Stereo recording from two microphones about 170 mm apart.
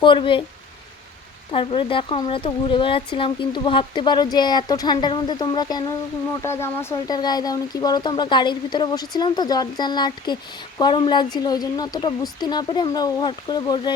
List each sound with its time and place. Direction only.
0.0 s speech: 30° left (ahead or behind)
1.5 s speech: 30° left (ahead or behind)